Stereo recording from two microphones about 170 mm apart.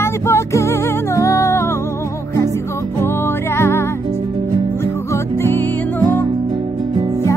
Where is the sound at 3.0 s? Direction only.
15° left (ahead or behind).